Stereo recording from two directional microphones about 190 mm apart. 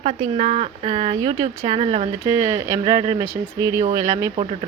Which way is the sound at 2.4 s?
15° right (ahead or behind).